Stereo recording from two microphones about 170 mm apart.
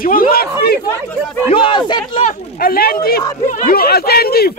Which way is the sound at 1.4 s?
30° left (ahead or behind).